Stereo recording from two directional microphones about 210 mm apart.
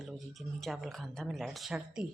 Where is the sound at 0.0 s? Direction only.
Centre (ahead or behind).